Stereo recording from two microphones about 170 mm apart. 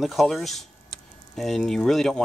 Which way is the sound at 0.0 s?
Centre (ahead or behind).